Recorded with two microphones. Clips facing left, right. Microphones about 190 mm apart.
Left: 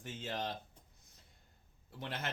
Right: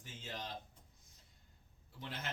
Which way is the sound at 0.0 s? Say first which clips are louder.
Left 7 dB; 65° left (ahead or behind).